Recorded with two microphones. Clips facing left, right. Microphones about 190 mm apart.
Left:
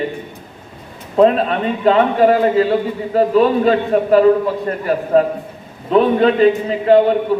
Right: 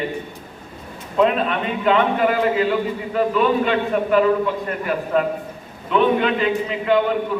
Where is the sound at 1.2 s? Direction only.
35° left (ahead or behind).